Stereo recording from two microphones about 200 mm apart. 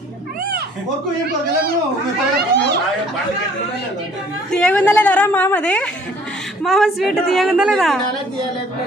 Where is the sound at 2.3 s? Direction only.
55° right (ahead or behind).